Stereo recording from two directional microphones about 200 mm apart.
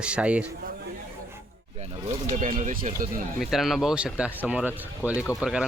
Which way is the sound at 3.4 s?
Centre (ahead or behind).